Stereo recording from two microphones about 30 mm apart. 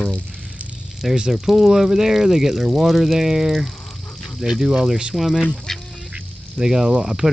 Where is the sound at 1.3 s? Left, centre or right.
Centre.